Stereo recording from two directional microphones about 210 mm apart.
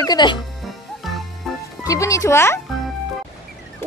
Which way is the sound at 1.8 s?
15° left (ahead or behind).